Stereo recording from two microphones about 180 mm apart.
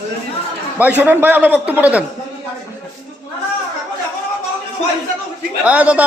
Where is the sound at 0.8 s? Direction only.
10° right (ahead or behind).